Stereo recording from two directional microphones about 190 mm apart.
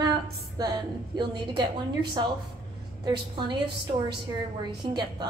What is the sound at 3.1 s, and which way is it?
Speech, 25° right (ahead or behind).